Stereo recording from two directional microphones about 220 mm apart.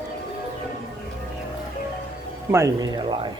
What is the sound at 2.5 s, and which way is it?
Speech, 15° right (ahead or behind).